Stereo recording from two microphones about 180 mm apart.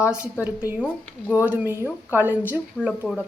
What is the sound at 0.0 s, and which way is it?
A woman's voice, 5° right (ahead or behind).